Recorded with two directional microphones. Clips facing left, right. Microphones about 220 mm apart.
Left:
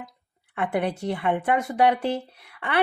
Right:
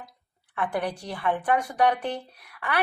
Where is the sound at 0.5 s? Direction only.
25° left (ahead or behind).